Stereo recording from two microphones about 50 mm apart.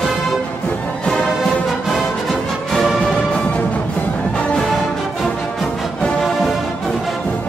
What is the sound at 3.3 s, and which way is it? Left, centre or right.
Music, left.